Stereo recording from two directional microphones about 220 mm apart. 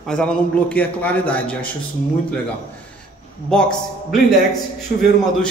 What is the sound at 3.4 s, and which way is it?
Speech, 5° left (ahead or behind).